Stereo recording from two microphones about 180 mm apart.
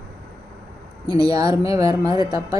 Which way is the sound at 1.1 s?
20° right (ahead or behind).